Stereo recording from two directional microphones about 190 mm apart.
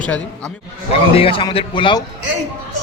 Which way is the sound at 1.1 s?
30° left (ahead or behind).